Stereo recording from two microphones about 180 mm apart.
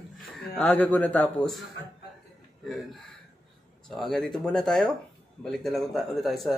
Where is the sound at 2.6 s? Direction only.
Centre (ahead or behind).